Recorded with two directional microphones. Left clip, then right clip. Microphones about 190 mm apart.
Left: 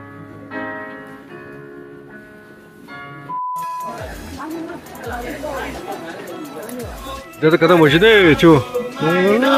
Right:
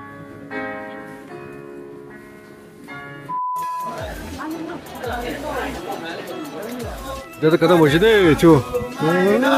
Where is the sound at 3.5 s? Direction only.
Centre (ahead or behind).